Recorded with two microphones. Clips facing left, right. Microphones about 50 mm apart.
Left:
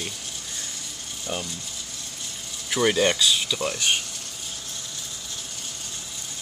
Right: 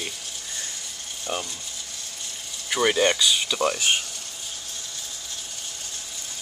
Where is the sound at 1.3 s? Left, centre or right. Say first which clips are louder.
Right 1 dB; centre.